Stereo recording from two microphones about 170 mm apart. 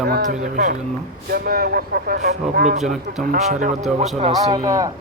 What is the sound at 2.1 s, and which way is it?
Speech, 45° right (ahead or behind).